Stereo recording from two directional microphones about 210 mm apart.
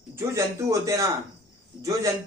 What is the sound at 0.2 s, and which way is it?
Speech, 15° right (ahead or behind).